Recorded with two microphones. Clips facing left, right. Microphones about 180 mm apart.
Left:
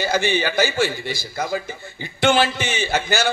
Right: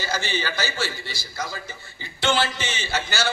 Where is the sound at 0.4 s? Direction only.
55° left (ahead or behind).